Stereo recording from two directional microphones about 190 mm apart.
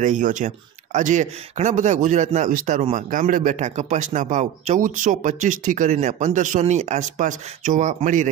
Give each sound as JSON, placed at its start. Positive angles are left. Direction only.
{"t": 0.0, "sound": "speech", "side_deg": -40}